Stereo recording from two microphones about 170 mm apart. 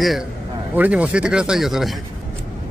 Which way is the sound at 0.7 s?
10° right (ahead or behind).